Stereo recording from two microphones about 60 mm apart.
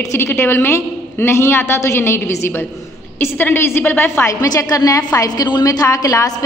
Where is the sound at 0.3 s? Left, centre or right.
Left.